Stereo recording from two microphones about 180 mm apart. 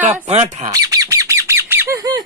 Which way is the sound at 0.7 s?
20° right (ahead or behind).